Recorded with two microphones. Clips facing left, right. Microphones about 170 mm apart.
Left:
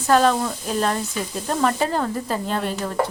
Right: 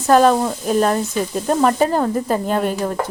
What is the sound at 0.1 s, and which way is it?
Speech, 45° right (ahead or behind).